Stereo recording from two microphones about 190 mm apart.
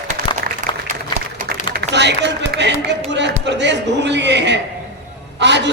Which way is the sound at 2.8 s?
65° right (ahead or behind).